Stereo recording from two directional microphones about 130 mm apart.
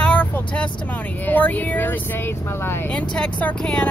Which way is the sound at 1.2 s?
10° left (ahead or behind).